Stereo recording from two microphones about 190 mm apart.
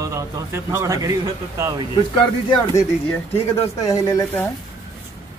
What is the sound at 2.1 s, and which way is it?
Speech, 20° left (ahead or behind).